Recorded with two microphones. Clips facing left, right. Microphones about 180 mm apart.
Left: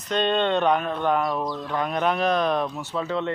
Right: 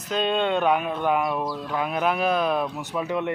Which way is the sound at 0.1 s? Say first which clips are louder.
Left 1 dB; 5° right (ahead or behind).